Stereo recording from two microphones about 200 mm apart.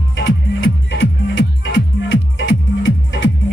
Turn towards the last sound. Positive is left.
turn(degrees=70)  # may be behind; listen again after turning